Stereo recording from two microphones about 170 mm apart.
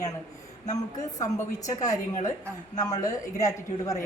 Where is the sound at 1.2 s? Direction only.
20° left (ahead or behind).